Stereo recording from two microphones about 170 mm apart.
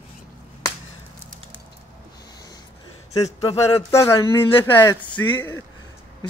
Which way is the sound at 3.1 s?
20° left (ahead or behind).